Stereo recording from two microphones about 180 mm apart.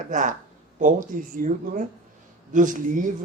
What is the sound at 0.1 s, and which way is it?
Speech, 45° right (ahead or behind).